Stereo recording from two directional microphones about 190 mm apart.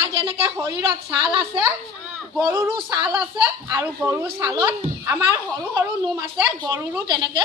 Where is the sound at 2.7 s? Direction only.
25° right (ahead or behind).